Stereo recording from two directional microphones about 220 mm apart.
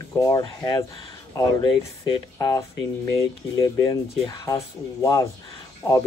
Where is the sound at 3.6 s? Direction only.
15° left (ahead or behind).